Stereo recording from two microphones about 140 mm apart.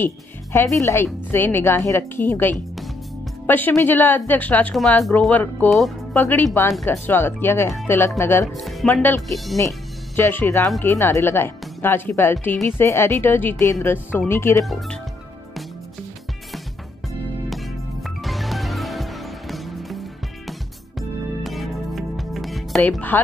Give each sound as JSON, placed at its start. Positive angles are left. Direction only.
{"t": 0.0, "sound": "a woman's voice", "side_deg": 15}
{"t": 8.5, "sound": "speech", "side_deg": 0}
{"t": 8.9, "sound": "a woman's voice", "side_deg": 15}
{"t": 14.6, "sound": "speech", "side_deg": 0}
{"t": 17.5, "sound": "music", "side_deg": 0}
{"t": 22.8, "sound": "a woman's voice", "side_deg": 10}